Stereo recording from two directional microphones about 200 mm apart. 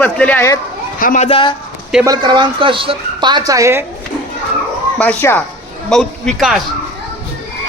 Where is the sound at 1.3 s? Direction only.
25° left (ahead or behind).